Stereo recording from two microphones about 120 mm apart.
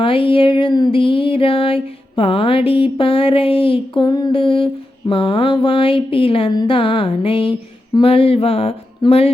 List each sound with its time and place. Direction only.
0.0 s music: 50° left (ahead or behind)
6.5 s a sound: 35° left (ahead or behind)
6.7 s music: 50° left (ahead or behind)
9.0 s speech: 55° left (ahead or behind)